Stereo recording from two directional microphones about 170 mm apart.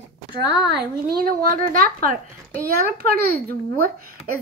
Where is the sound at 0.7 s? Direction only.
65° right (ahead or behind).